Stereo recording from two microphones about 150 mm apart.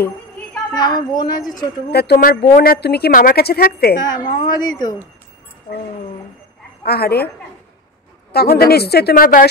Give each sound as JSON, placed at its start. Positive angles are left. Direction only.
{"t": 0.7, "sound": "a woman's voice", "side_deg": 25}
{"t": 1.9, "sound": "a woman's voice", "side_deg": 90}
{"t": 4.1, "sound": "a woman's voice", "side_deg": 30}
{"t": 6.8, "sound": "a woman's voice", "side_deg": 90}
{"t": 8.3, "sound": "a woman's voice", "side_deg": 90}